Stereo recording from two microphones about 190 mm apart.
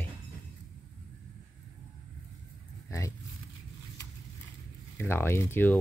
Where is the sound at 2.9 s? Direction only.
15° left (ahead or behind).